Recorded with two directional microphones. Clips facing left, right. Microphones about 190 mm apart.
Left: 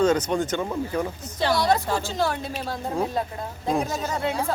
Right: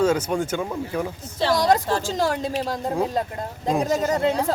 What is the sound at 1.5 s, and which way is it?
Speech, 40° right (ahead or behind).